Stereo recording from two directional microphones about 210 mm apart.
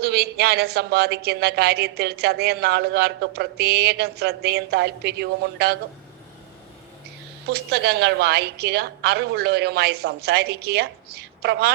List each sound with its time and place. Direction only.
0.0 s a woman's voice: 50° right (ahead or behind)
7.5 s a woman's voice: 50° right (ahead or behind)